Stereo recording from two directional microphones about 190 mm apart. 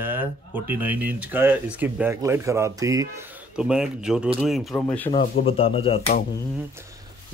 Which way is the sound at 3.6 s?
5° right (ahead or behind).